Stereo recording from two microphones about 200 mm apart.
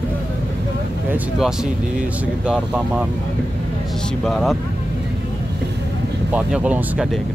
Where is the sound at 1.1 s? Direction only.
5° right (ahead or behind).